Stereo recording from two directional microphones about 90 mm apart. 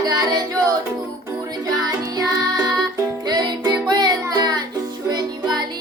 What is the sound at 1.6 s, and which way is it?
Music, 45° right (ahead or behind).